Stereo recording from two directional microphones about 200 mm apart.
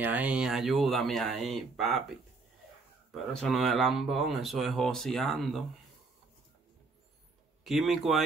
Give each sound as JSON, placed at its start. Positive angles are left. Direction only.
{"t": 0.0, "sound": "speech", "side_deg": -5}
{"t": 3.3, "sound": "speech", "side_deg": 0}
{"t": 7.6, "sound": "speech", "side_deg": 0}